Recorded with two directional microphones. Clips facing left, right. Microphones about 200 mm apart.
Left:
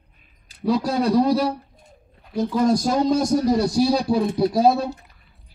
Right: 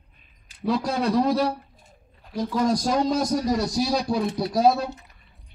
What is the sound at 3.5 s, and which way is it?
Speech, 30° left (ahead or behind).